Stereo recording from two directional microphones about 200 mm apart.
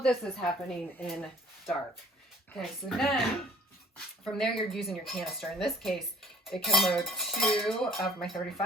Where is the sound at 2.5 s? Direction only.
Centre (ahead or behind).